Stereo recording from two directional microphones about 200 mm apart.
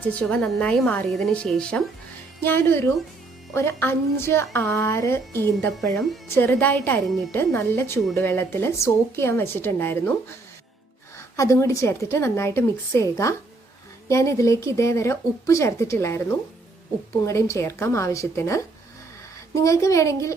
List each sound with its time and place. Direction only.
0.0 s a woman's voice: 5° left (ahead or behind)
11.3 s speech: 15° left (ahead or behind)